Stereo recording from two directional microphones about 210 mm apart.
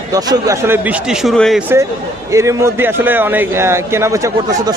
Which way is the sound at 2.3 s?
15° right (ahead or behind).